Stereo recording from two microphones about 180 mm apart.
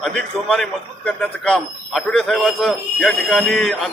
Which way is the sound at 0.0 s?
5° left (ahead or behind).